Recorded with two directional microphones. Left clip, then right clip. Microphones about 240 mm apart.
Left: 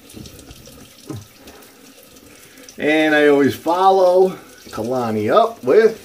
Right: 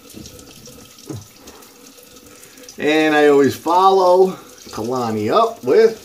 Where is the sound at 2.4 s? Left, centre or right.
Centre.